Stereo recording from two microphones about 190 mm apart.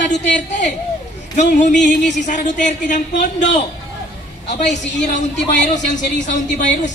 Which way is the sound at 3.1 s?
70° left (ahead or behind).